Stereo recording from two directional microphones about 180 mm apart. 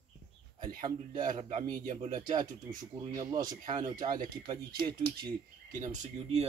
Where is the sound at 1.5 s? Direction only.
45° right (ahead or behind).